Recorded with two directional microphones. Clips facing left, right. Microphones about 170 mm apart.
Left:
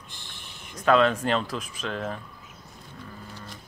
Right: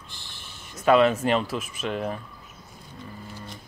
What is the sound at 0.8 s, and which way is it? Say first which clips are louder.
Speech: right 2 dB; 5° right (ahead or behind).